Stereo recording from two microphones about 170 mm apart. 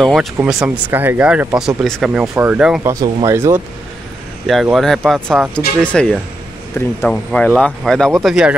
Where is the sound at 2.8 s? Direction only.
20° right (ahead or behind).